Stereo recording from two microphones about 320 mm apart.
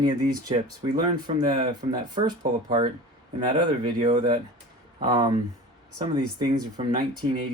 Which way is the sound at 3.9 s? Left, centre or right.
Centre.